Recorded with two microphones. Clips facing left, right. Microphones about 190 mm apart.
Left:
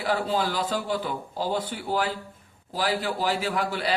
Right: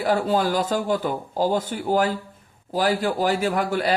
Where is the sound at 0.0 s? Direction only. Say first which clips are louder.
Right 5 dB; 45° right (ahead or behind).